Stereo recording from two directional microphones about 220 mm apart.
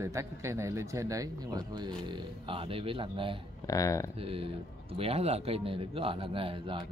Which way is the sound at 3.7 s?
15° left (ahead or behind).